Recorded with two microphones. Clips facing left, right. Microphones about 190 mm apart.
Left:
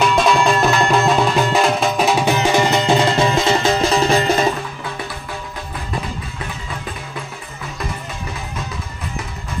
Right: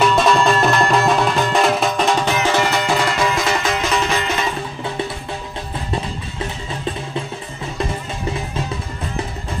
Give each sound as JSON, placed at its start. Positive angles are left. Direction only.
{"t": 0.0, "sound": "music", "side_deg": 0}